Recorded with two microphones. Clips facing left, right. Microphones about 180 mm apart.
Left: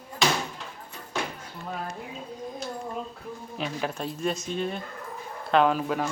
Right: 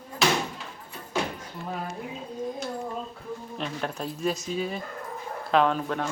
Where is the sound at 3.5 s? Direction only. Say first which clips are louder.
Left 2 dB; 5° left (ahead or behind).